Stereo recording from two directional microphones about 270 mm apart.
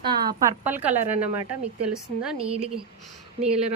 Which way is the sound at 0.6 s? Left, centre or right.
Centre.